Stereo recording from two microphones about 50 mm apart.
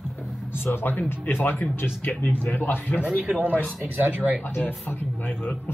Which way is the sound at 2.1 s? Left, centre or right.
Left.